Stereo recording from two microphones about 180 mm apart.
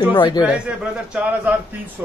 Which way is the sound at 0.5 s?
5° right (ahead or behind).